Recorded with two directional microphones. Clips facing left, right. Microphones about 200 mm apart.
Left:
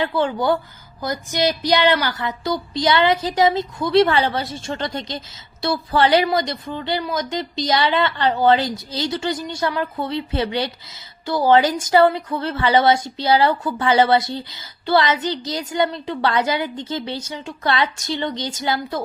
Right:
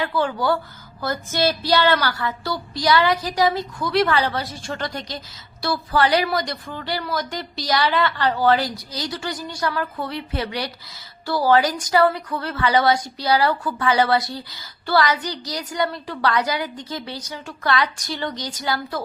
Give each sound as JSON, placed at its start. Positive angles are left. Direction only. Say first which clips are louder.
{"t": 0.0, "sound": "speech", "louder": "left 2 dB", "side_deg": 25}